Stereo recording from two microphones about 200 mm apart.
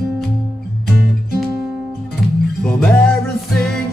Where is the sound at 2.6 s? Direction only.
5° left (ahead or behind).